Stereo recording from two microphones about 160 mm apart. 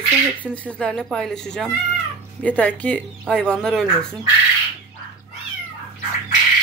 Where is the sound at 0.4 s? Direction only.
5° left (ahead or behind).